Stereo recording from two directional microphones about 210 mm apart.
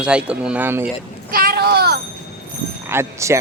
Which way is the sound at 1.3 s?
45° right (ahead or behind).